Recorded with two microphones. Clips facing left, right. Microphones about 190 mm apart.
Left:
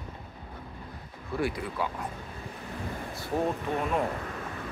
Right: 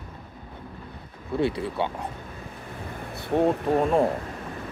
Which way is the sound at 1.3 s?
25° right (ahead or behind).